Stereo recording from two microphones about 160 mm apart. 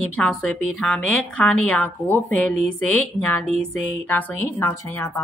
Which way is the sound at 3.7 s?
10° left (ahead or behind).